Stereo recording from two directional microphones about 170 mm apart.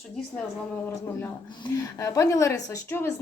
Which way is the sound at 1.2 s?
20° left (ahead or behind).